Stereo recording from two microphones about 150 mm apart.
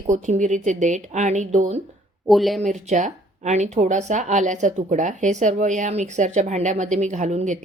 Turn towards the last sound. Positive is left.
turn(degrees=-55)  # may be behind; listen again after turning